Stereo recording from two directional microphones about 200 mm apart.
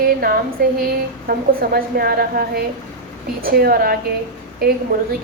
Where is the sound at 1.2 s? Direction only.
50° right (ahead or behind).